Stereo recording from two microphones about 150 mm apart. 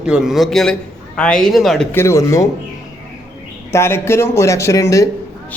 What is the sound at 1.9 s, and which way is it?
Speech, 15° left (ahead or behind).